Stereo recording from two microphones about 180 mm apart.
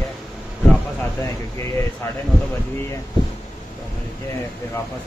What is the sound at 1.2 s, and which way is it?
Speech, 15° left (ahead or behind).